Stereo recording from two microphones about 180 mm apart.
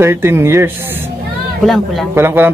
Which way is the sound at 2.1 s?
10° right (ahead or behind).